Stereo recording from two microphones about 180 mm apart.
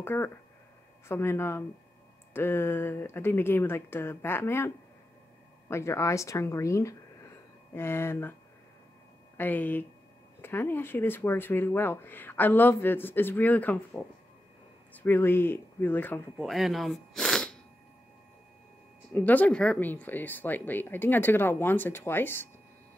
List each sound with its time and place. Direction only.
0.0 s speech: 10° left (ahead or behind)
9.4 s speech: 10° left (ahead or behind)
16.3 s speech: centre (ahead or behind)
19.1 s speech: 10° left (ahead or behind)